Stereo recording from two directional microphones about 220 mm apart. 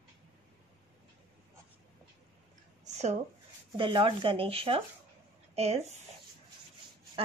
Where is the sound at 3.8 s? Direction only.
20° right (ahead or behind).